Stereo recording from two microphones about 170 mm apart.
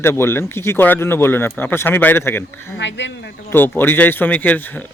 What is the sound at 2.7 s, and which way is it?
Speech, 90° left.